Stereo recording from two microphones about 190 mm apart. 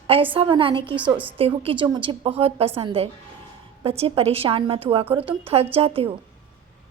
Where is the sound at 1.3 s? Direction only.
30° right (ahead or behind).